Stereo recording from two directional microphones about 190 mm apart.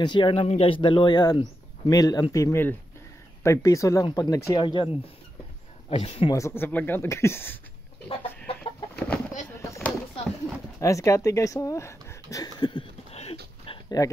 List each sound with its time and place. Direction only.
0.0 s speech: 25° left (ahead or behind)
5.9 s speech: 35° left (ahead or behind)
6.3 s speech: 15° left (ahead or behind)
8.5 s chicken: 5° left (ahead or behind)
9.5 s a sound: 15° left (ahead or behind)
10.8 s speech: 15° left (ahead or behind); by 13.4 s 30° left (ahead or behind)
13.7 s a sound: 20° left (ahead or behind)